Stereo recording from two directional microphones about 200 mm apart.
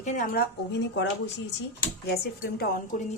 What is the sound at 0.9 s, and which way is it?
Speech, 60° left (ahead or behind).